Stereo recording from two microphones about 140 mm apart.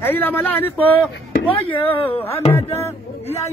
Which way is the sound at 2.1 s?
10° left (ahead or behind).